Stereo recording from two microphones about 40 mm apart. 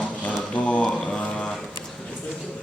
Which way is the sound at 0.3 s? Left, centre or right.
Left.